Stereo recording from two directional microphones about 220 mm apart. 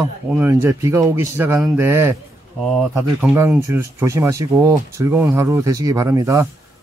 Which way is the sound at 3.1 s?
10° right (ahead or behind).